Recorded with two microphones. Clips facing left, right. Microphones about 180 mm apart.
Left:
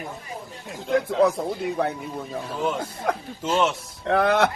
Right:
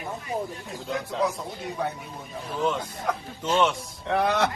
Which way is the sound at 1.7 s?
60° left (ahead or behind).